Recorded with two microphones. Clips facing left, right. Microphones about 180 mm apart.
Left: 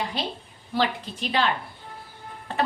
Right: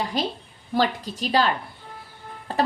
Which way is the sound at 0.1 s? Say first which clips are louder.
Right 4 dB; 45° right (ahead or behind).